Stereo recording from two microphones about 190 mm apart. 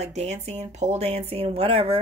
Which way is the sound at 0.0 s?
35° right (ahead or behind).